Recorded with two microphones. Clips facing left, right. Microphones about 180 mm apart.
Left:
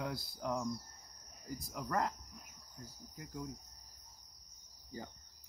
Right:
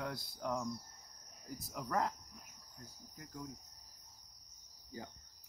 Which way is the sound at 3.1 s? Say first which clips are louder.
Left 4 dB; 10° left (ahead or behind).